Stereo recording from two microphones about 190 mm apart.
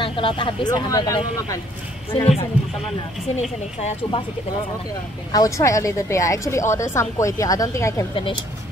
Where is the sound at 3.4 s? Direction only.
35° left (ahead or behind).